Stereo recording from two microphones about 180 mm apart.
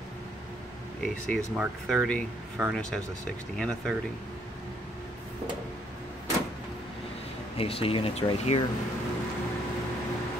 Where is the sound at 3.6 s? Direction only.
5° left (ahead or behind).